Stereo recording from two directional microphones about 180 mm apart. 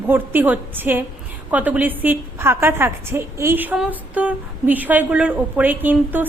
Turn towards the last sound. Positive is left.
turn(degrees=-10)  # may be behind; listen again after turning